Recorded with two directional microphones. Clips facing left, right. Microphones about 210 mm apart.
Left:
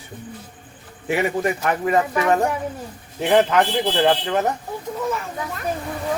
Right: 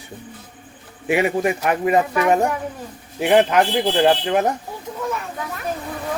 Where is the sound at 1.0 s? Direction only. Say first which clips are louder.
Right 2 dB; 15° right (ahead or behind).